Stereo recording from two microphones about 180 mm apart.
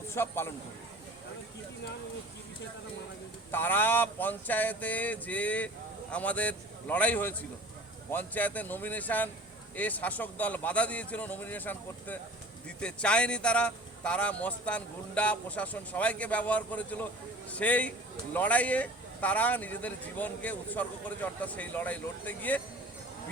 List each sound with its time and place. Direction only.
0.1 s a man's voice: 15° left (ahead or behind)
3.5 s speech: 10° left (ahead or behind)